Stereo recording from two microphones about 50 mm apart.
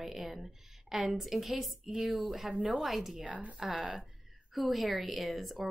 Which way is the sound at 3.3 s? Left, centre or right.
Right.